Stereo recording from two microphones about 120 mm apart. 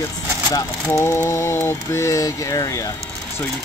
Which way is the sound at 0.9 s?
20° left (ahead or behind).